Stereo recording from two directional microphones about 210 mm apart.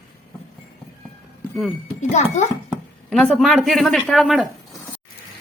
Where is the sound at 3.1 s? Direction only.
Centre (ahead or behind).